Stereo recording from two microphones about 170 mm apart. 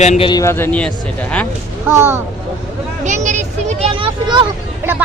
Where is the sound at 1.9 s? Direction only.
15° right (ahead or behind).